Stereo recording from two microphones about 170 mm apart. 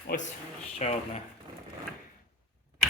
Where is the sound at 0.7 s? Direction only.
40° left (ahead or behind).